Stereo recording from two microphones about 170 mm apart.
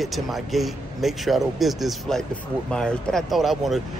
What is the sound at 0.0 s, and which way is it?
Speech, centre (ahead or behind).